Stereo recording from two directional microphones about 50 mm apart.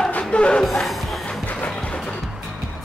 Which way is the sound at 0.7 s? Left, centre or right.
Centre.